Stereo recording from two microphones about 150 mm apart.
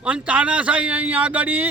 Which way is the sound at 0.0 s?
10° right (ahead or behind).